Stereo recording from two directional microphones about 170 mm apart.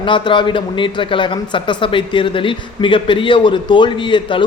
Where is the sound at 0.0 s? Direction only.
30° left (ahead or behind).